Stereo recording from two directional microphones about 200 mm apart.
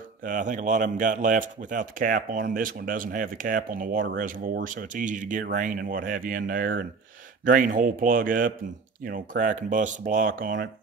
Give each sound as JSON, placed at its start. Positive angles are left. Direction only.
{"t": 0.2, "sound": "speech", "side_deg": -40}